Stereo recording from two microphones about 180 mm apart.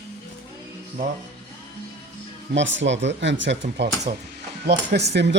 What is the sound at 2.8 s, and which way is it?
Speech, 90° right.